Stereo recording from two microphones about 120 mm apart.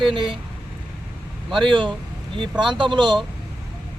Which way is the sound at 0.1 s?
45° right (ahead or behind).